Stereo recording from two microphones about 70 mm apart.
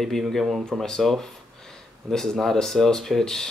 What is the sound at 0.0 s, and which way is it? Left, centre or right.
Speech, centre.